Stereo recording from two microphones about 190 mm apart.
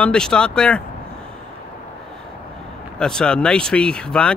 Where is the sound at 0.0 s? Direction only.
5° left (ahead or behind).